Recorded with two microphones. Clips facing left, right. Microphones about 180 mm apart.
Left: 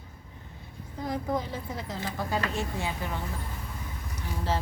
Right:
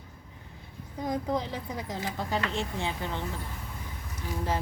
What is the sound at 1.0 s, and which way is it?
A woman's voice, 20° right (ahead or behind).